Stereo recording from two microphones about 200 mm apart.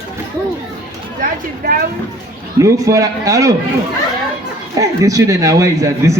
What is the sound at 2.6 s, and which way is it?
Speech, 15° right (ahead or behind).